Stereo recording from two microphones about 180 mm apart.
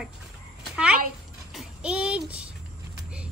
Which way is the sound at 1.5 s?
5° right (ahead or behind).